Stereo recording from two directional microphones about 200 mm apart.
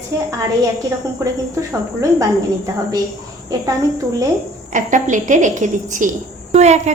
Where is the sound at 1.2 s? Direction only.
15° right (ahead or behind).